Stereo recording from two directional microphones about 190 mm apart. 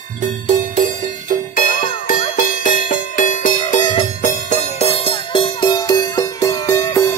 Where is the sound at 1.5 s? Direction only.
45° left (ahead or behind).